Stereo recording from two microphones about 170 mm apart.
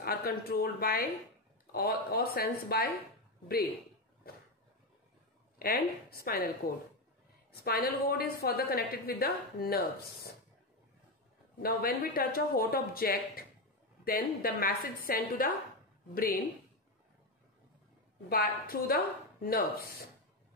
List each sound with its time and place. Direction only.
0.0 s a woman's voice: 60° left (ahead or behind)
5.6 s a woman's voice: 65° left (ahead or behind)
7.6 s a woman's voice: 60° left (ahead or behind)
11.6 s a woman's voice: 60° left (ahead or behind)
18.3 s a woman's voice: 65° left (ahead or behind)